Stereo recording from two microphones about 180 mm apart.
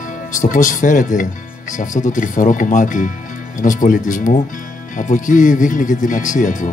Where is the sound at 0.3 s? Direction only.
45° left (ahead or behind).